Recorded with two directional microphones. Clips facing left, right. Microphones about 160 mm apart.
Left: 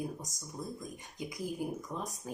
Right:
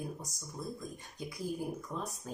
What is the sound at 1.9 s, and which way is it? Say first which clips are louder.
Speech: even; 15° left (ahead or behind).